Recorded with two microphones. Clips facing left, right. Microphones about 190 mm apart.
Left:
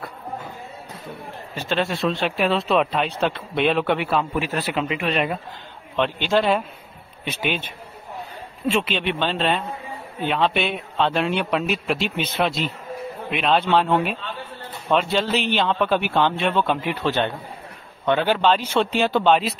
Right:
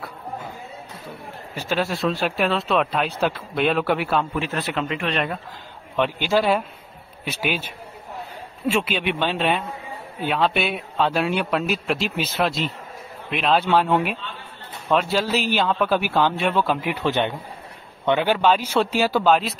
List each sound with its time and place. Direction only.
1.5 s speech: 10° right (ahead or behind)
4.4 s speech: 10° left (ahead or behind)
5.9 s speech: 5° right (ahead or behind)
10.2 s speech: centre (ahead or behind)
16.9 s speech: 15° right (ahead or behind)